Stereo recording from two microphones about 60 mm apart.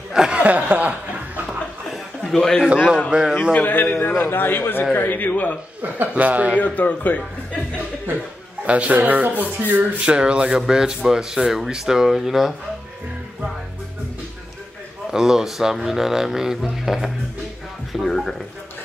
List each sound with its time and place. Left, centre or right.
0.1 s speech: centre
0.4 s speech: right
2.3 s a man's voice: centre
3.1 s speech: centre
3.5 s a man's voice: left
5.8 s speech: right
6.6 s speech: left
8.6 s speech: right
9.9 s speech: centre
15.0 s speech: centre
18.0 s a sound: centre